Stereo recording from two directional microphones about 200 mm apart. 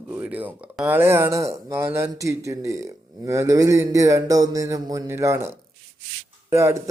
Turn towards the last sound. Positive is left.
turn(degrees=-15)  # may be behind; listen again after turning